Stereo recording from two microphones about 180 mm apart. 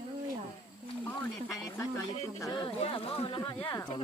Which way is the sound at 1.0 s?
15° left (ahead or behind).